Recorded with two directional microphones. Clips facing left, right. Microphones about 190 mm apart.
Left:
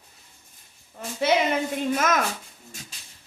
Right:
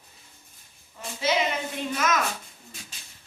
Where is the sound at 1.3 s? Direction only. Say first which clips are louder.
Left 3 dB; 60° left (ahead or behind).